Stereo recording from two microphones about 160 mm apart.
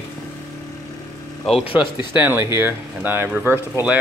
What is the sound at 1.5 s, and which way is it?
Speech, 40° left (ahead or behind).